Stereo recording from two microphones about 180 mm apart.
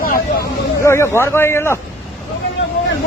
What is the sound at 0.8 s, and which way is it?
Speech, 15° left (ahead or behind).